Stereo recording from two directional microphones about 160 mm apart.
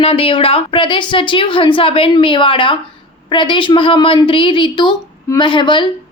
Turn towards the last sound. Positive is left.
turn(degrees=30)  # may be behind; listen again after turning